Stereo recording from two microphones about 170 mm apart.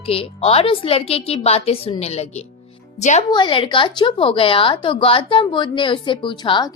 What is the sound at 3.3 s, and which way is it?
A woman's voice, 30° left (ahead or behind).